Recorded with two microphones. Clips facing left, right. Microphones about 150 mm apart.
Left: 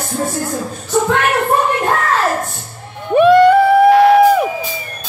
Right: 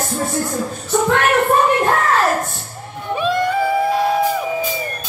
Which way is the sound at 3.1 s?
60° left (ahead or behind).